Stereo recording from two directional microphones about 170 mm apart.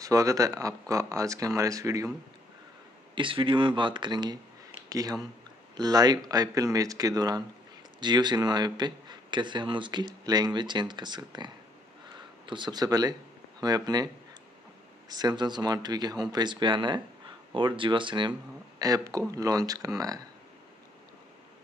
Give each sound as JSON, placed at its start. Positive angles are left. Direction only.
{"t": 0.0, "sound": "a man's voice", "side_deg": -20}
{"t": 3.2, "sound": "a man's voice", "side_deg": -30}